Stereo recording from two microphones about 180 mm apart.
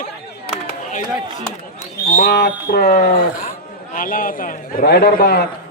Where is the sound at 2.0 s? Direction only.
60° left (ahead or behind).